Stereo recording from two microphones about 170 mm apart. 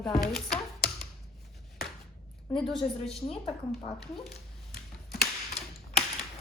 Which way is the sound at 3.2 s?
35° left (ahead or behind).